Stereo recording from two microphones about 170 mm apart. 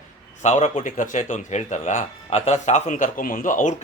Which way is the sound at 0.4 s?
45° left (ahead or behind).